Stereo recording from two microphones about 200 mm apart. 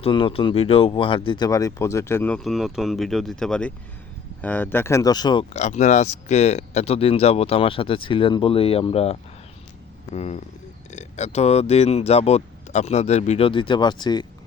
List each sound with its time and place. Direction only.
0.0 s speech: 25° left (ahead or behind)
5.5 s speech: 35° left (ahead or behind)
10.2 s speech: 30° left (ahead or behind)